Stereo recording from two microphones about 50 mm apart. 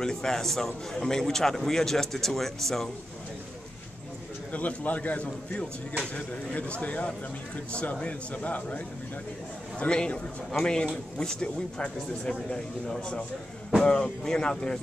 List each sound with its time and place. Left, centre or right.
0.0 s a man's voice: centre
4.5 s a man's voice: left
9.8 s a man's voice: centre